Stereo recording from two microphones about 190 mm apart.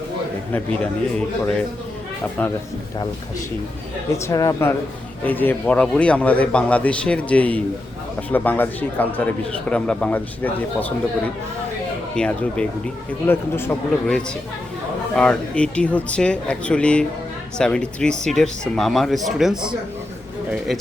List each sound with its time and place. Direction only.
0.5 s a man's voice: 5° left (ahead or behind)
4.1 s a man's voice: 15° left (ahead or behind)
12.1 s a man's voice: 5° left (ahead or behind)